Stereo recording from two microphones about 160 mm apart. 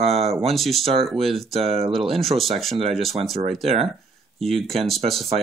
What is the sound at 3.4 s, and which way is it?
Speech, 40° right (ahead or behind).